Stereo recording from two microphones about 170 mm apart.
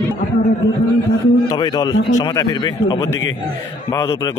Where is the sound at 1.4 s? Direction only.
25° left (ahead or behind).